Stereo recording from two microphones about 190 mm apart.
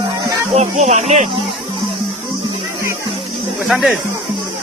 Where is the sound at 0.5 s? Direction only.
35° right (ahead or behind).